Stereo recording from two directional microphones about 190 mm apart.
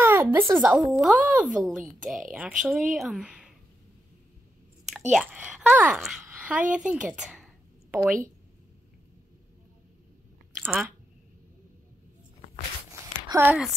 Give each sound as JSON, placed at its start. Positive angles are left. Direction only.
{"t": 0.0, "sound": "a sound", "side_deg": -10}
{"t": 0.5, "sound": "speech", "side_deg": 0}
{"t": 5.1, "sound": "speech", "side_deg": -5}
{"t": 6.7, "sound": "a sound", "side_deg": -5}
{"t": 10.6, "sound": "speech", "side_deg": -5}
{"t": 13.3, "sound": "speech", "side_deg": -10}